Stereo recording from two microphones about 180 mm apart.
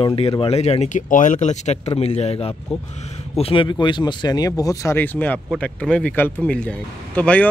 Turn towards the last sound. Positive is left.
turn(degrees=5)  # may be behind; listen again after turning